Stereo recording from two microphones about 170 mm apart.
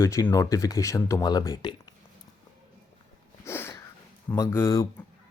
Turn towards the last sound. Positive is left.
turn(degrees=15)  # may be behind; listen again after turning